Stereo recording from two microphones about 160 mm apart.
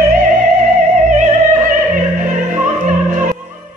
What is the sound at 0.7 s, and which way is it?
Music, 50° right (ahead or behind).